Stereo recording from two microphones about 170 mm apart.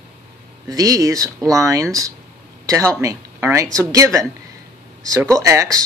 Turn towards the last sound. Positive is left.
turn(degrees=-20)  # may be behind; listen again after turning